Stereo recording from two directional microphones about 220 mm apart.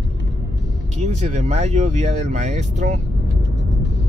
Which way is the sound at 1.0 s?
30° right (ahead or behind).